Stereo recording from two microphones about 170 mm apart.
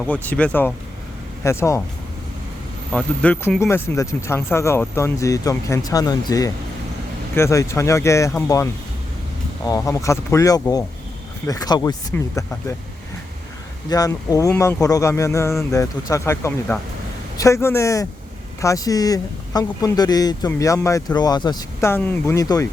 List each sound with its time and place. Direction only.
0.0 s speech: 10° left (ahead or behind)
2.9 s speech: 10° left (ahead or behind)
13.9 s speech: 20° left (ahead or behind)